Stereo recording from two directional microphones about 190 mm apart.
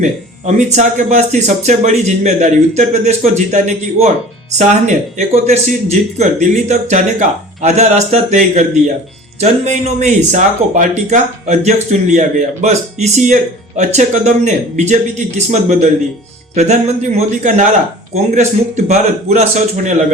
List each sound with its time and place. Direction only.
0.0 s speech: 40° right (ahead or behind)
16.6 s speech: 35° right (ahead or behind)